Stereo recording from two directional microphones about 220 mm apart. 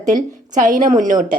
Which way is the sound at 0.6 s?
35° right (ahead or behind).